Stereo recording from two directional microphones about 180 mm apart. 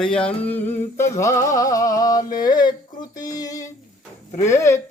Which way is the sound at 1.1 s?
15° left (ahead or behind).